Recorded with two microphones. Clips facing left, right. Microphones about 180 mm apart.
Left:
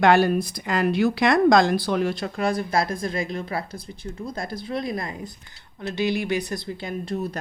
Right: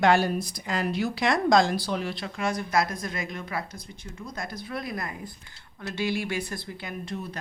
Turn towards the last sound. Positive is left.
turn(degrees=35)  # may be behind; listen again after turning